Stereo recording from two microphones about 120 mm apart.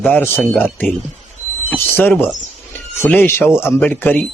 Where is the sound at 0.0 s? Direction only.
15° left (ahead or behind).